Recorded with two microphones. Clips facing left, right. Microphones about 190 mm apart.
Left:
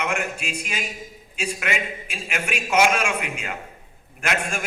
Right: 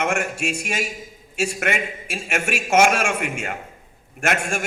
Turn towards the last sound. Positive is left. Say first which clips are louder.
# right 3 dB
turn(degrees=-45)  # may be behind; listen again after turning